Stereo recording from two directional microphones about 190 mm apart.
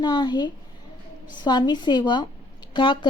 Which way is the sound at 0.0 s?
20° left (ahead or behind).